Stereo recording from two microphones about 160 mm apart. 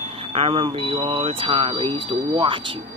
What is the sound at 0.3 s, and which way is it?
Speech, 35° right (ahead or behind).